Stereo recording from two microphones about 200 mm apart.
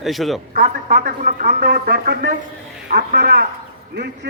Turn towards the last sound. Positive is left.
turn(degrees=-55)  # may be behind; listen again after turning